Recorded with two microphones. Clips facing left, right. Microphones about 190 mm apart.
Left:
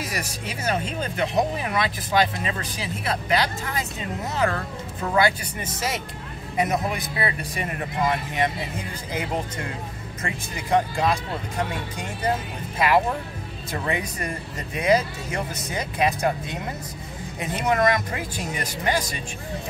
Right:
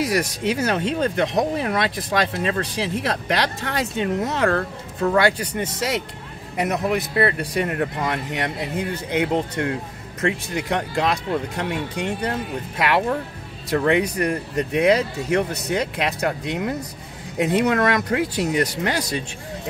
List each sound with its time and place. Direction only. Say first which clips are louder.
0.0 s a man's voice: right 10 dB; 65° right (ahead or behind)